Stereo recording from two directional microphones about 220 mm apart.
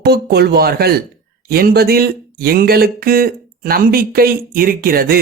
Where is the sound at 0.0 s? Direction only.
45° right (ahead or behind).